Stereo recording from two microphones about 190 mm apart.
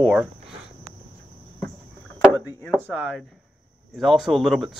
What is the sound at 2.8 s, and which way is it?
Speech, 10° right (ahead or behind).